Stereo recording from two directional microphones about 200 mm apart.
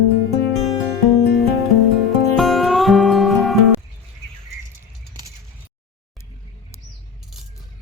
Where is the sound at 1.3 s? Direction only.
Centre (ahead or behind).